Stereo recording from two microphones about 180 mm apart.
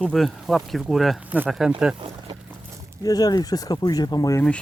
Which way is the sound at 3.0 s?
20° left (ahead or behind).